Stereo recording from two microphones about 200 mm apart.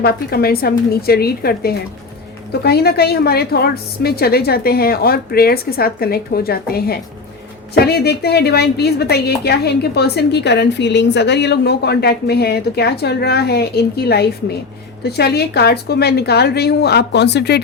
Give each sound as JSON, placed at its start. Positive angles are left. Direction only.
{"t": 0.0, "sound": "a woman's voice", "side_deg": 50}